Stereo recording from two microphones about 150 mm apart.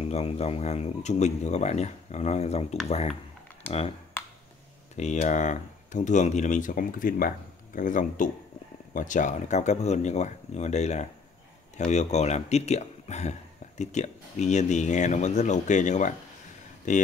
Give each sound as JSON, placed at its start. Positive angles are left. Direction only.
{"t": 0.1, "sound": "speech", "side_deg": 45}
{"t": 4.9, "sound": "speech", "side_deg": 50}